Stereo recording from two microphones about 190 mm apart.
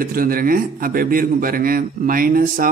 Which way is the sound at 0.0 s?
50° right (ahead or behind).